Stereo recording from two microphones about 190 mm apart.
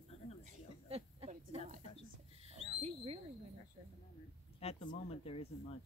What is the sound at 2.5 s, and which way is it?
Owl, 30° right (ahead or behind).